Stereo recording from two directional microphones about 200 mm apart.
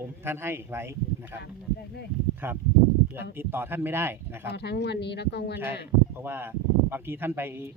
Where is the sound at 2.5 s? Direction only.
10° right (ahead or behind).